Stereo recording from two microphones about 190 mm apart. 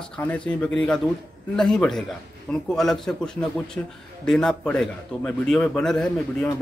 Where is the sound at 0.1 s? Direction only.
5° left (ahead or behind).